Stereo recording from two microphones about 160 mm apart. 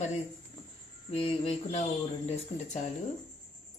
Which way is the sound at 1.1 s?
35° left (ahead or behind).